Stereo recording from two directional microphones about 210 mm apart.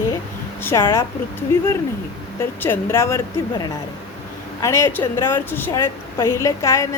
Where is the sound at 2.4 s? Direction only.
10° left (ahead or behind).